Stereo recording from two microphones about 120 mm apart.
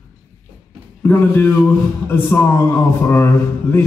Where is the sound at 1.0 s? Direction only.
20° left (ahead or behind).